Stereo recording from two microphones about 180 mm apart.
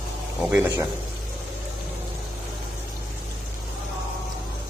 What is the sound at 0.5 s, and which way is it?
Speech, 15° right (ahead or behind).